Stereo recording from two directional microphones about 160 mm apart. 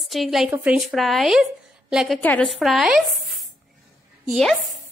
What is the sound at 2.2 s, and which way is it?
A woman's voice, 10° left (ahead or behind).